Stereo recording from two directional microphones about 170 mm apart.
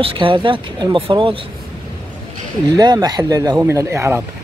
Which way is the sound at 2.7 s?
25° right (ahead or behind).